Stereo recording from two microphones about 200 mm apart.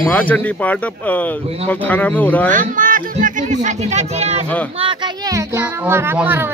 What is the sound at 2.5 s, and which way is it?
Speech, 40° right (ahead or behind).